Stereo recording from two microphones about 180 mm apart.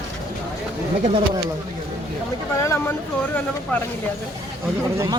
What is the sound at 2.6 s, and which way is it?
Speech, 15° left (ahead or behind).